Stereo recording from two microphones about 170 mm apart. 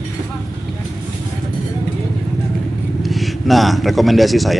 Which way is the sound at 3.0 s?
Centre (ahead or behind).